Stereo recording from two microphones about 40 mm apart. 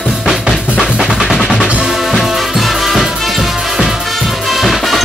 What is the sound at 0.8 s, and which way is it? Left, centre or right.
Drum, centre.